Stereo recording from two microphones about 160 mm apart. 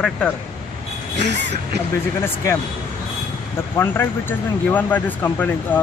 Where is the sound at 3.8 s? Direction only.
15° left (ahead or behind).